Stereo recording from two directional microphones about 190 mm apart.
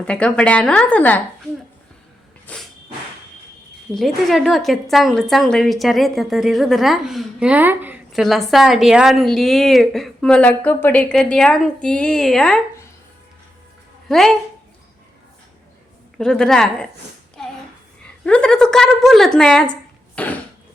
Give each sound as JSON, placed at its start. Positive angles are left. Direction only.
{"t": 0.0, "sound": "a woman's voice", "side_deg": 5}
{"t": 2.5, "sound": "a sound", "side_deg": 5}
{"t": 3.9, "sound": "a woman's voice", "side_deg": 0}
{"t": 14.1, "sound": "a woman's voice", "side_deg": 0}
{"t": 16.1, "sound": "a woman's voice", "side_deg": 5}
{"t": 18.0, "sound": "a woman's voice", "side_deg": 5}
{"t": 20.2, "sound": "a sound", "side_deg": 10}